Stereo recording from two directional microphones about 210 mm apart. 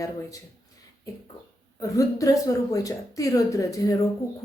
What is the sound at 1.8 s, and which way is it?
Speech, 15° left (ahead or behind).